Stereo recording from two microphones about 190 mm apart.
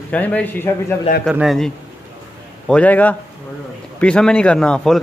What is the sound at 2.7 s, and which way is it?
A man's voice, 5° left (ahead or behind).